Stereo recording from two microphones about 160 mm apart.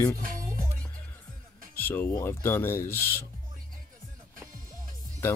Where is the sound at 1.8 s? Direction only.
15° left (ahead or behind).